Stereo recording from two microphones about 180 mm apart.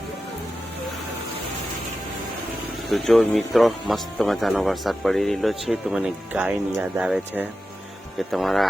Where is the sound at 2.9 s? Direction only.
Centre (ahead or behind).